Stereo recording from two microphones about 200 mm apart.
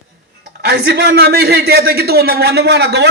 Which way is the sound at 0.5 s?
50° right (ahead or behind).